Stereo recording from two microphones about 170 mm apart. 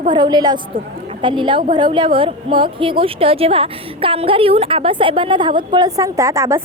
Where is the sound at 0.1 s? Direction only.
25° right (ahead or behind).